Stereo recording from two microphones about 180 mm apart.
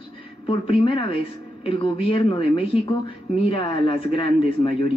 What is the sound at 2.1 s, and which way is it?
Speech, 30° left (ahead or behind).